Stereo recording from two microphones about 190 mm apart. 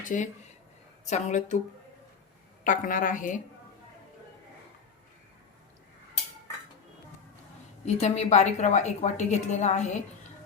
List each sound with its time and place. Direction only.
0.0 s a woman's voice: 40° left (ahead or behind)
2.6 s a woman's voice: 45° left (ahead or behind)
7.9 s a woman's voice: 35° left (ahead or behind)